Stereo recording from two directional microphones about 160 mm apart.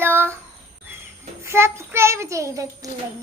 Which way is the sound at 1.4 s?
15° right (ahead or behind).